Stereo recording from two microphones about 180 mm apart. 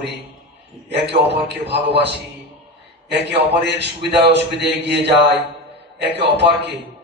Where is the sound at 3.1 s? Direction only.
70° right (ahead or behind).